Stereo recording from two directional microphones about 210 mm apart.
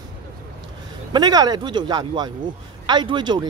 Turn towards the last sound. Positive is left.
turn(degrees=-20)  # may be behind; listen again after turning